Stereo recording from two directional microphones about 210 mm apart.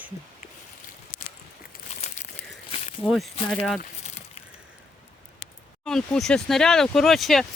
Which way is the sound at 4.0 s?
30° left (ahead or behind).